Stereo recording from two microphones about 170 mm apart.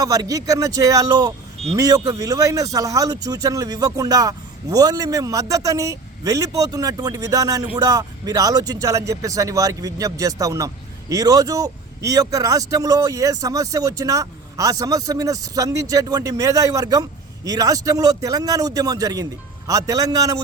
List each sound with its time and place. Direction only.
0.0 s speech: 20° right (ahead or behind)